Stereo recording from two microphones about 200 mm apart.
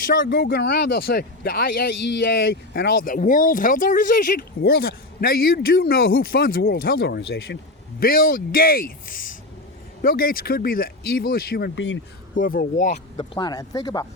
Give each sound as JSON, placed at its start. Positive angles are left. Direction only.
{"t": 0.3, "sound": "speech", "side_deg": 50}
{"t": 12.3, "sound": "speech", "side_deg": 40}
{"t": 13.1, "sound": "speech", "side_deg": 20}